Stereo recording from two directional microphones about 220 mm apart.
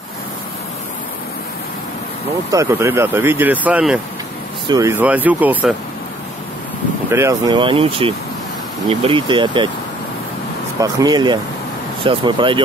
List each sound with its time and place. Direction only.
2.5 s speech: 15° right (ahead or behind)
7.1 s speech: 15° right (ahead or behind)
10.8 s speech: 15° right (ahead or behind)